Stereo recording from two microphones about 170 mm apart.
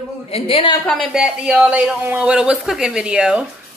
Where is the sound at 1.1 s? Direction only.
5° right (ahead or behind).